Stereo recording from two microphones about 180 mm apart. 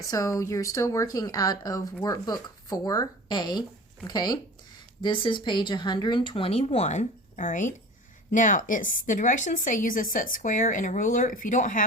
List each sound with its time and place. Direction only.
0.1 s speech: 20° left (ahead or behind); by 11.8 s 45° left (ahead or behind)